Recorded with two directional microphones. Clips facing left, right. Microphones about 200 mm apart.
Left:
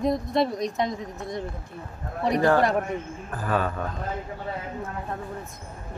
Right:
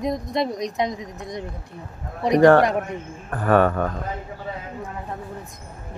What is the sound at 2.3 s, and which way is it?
Speech, 75° right (ahead or behind).